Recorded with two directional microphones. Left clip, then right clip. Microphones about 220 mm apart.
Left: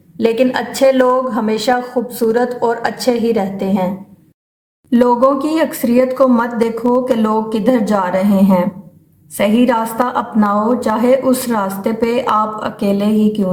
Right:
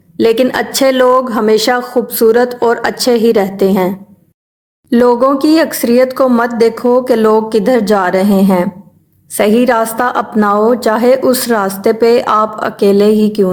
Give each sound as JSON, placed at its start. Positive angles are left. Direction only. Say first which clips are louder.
{"t": 0.2, "sound": "a woman's voice", "louder": "right 4 dB", "side_deg": -35}
{"t": 4.9, "sound": "a woman's voice", "louder": "right 3 dB", "side_deg": -30}